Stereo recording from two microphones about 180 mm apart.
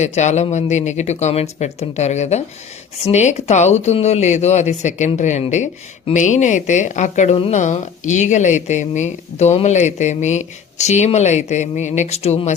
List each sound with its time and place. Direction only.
0.0 s a woman's voice: 40° left (ahead or behind)